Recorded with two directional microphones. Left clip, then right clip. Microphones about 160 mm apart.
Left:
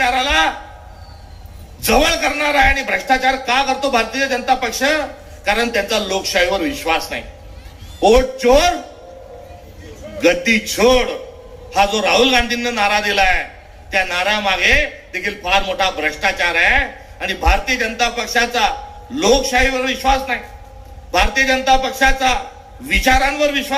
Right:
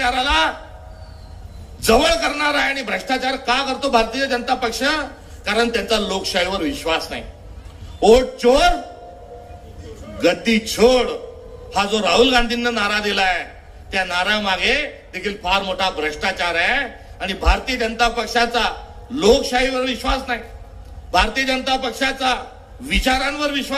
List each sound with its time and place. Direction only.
0.0 s a sound: 35° right (ahead or behind)
1.9 s a man's voice: 35° right (ahead or behind)
10.2 s a man's voice: 35° right (ahead or behind)